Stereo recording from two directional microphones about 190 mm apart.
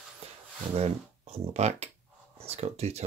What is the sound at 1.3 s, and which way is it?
Speech, 35° right (ahead or behind).